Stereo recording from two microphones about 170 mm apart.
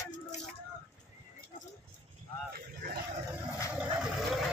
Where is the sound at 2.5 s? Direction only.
65° right (ahead or behind).